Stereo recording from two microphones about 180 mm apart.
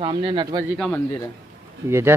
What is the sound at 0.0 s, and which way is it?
Speech, 25° right (ahead or behind).